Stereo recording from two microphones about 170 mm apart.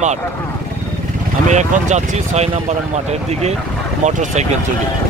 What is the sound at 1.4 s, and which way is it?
Speech, 45° right (ahead or behind).